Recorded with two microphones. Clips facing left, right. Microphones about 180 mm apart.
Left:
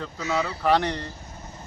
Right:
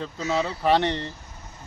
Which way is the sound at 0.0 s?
25° right (ahead or behind).